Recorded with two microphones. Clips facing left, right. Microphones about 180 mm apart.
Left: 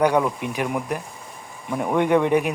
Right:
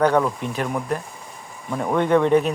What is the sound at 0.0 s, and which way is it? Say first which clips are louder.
A man's voice: right 1 dB; 10° left (ahead or behind).